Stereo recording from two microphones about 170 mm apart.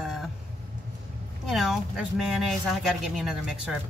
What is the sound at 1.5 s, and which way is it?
Speech, centre (ahead or behind).